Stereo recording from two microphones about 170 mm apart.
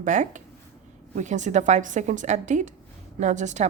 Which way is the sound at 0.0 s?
45° right (ahead or behind).